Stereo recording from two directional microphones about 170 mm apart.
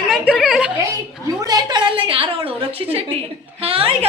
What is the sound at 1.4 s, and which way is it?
A woman's voice, 25° right (ahead or behind).